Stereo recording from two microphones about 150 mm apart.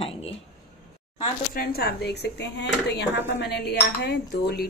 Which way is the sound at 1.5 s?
85° left.